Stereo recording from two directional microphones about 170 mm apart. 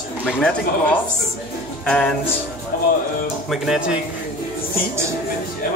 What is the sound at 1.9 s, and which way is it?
Speech, 5° left (ahead or behind).